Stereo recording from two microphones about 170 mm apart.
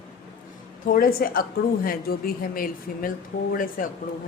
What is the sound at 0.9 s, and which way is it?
A woman's voice, 55° left (ahead or behind).